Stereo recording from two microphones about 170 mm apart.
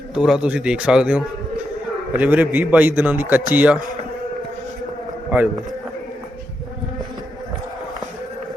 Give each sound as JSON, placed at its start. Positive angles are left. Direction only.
{"t": 0.1, "sound": "a man's voice", "side_deg": -5}